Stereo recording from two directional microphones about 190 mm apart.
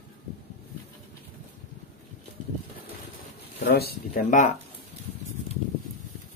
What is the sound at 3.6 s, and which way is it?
Speech, 55° left (ahead or behind).